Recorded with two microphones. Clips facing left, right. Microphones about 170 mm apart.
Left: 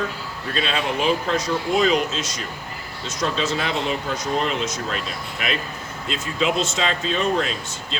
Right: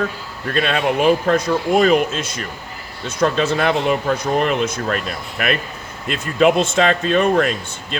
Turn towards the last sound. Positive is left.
turn(degrees=-55)  # may be behind; listen again after turning